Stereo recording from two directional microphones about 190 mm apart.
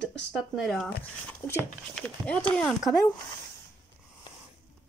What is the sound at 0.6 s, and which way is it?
Speech, 5° left (ahead or behind).